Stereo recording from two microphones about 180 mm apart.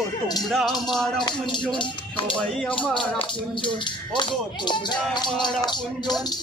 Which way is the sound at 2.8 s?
5° left (ahead or behind).